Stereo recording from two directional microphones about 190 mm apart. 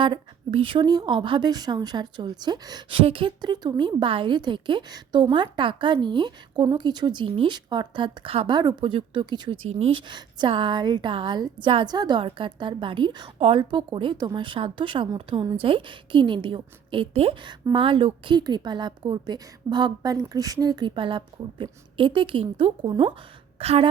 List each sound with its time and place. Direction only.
0.0 s a woman's voice: 25° right (ahead or behind)